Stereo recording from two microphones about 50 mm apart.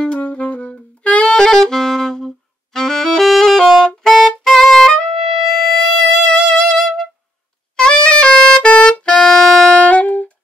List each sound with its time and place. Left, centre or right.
0.0 s saxophone: left
3.3 s music: centre
6.2 s music: centre
7.7 s music: centre
9.2 s music: centre
9.7 s saxophone: left